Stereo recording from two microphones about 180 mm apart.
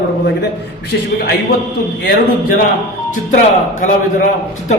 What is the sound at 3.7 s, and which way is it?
Speech, 45° left (ahead or behind).